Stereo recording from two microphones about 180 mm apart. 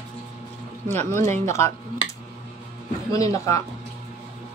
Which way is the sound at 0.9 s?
15° left (ahead or behind).